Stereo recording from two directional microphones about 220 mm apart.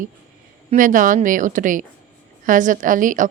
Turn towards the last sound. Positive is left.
turn(degrees=-35)  # may be behind; listen again after turning